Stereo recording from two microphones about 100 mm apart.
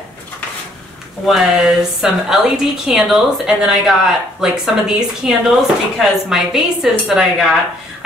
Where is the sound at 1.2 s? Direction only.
Centre (ahead or behind).